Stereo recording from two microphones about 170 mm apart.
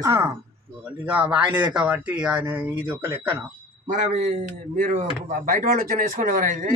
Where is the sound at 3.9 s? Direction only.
45° right (ahead or behind).